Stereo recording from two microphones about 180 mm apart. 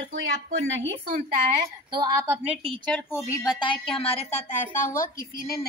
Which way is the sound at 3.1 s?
20° left (ahead or behind).